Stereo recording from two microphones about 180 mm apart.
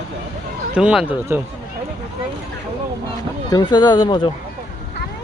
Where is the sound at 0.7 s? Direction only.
5° right (ahead or behind).